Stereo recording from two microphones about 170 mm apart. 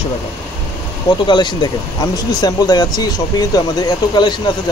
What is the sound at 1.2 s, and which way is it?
Speech, 25° left (ahead or behind).